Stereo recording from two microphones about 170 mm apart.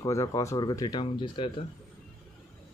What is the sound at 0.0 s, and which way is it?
Speech, 20° left (ahead or behind).